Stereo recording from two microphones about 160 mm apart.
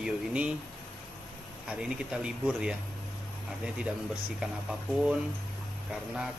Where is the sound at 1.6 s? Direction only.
5° right (ahead or behind).